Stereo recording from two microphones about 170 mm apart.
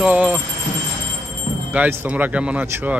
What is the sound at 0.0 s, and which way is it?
Speech, 10° right (ahead or behind).